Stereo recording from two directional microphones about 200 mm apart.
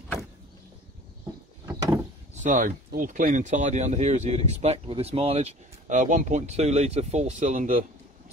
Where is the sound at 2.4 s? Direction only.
40° right (ahead or behind).